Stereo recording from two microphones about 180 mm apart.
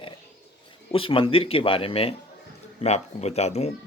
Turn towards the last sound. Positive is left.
turn(degrees=35)  # may be behind; listen again after turning